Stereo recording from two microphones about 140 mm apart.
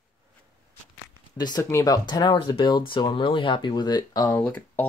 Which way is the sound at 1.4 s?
30° left (ahead or behind).